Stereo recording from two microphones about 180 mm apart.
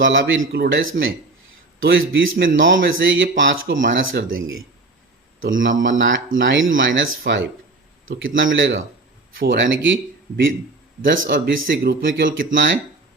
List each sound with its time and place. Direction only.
0.0 s speech: 90° right
9.4 s a man's voice: 75° right (ahead or behind)
12.5 s speech: 90° right